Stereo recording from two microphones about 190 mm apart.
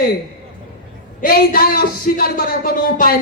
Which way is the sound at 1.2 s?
50° left (ahead or behind).